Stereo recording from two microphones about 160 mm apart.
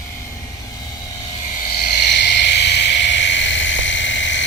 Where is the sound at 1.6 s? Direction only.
75° left (ahead or behind); by 3.3 s 90° left.